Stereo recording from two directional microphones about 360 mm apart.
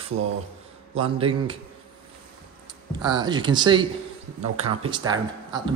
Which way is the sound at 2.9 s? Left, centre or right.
Centre.